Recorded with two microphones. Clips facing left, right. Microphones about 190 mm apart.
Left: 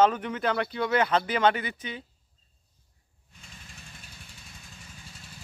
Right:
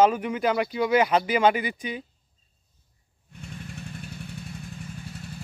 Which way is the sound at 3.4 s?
65° right (ahead or behind).